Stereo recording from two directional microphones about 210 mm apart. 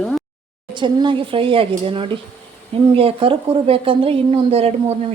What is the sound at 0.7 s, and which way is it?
A woman's voice, 20° right (ahead or behind).